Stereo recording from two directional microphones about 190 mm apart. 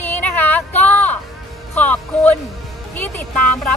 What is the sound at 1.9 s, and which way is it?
Speech, 10° left (ahead or behind).